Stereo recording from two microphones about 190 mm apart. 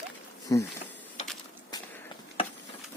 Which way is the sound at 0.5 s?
20° left (ahead or behind).